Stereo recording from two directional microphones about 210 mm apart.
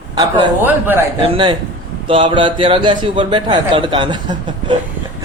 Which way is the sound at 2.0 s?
25° right (ahead or behind).